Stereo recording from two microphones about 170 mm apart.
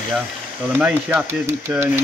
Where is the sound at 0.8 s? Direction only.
10° right (ahead or behind).